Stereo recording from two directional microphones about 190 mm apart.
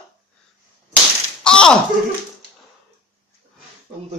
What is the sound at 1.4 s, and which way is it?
Slap, 5° left (ahead or behind).